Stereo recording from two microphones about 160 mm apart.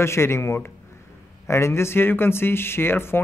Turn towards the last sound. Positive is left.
turn(degrees=15)  # may be behind; listen again after turning